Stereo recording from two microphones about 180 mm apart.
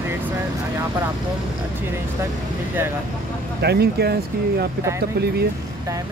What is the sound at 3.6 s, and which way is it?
Speech, 65° right (ahead or behind).